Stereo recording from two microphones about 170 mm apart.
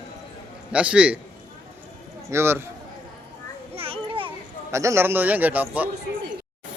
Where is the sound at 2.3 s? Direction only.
15° right (ahead or behind).